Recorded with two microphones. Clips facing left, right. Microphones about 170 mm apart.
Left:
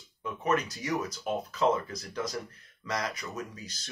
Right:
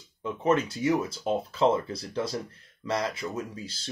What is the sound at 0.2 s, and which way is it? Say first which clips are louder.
Speech: right 4 dB; 25° right (ahead or behind).